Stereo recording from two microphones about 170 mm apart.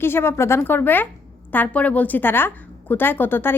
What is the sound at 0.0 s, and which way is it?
A woman's voice, 15° left (ahead or behind).